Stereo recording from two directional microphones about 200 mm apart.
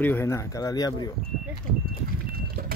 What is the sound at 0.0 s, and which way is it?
Speech, 15° left (ahead or behind).